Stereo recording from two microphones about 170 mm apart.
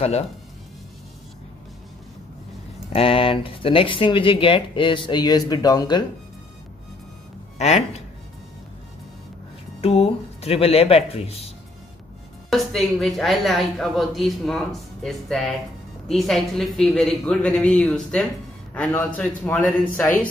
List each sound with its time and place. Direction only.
2.9 s speech: 35° left (ahead or behind)
7.5 s speech: 40° left (ahead or behind)
9.8 s speech: 35° left (ahead or behind)
12.4 s a woman's voice: centre (ahead or behind)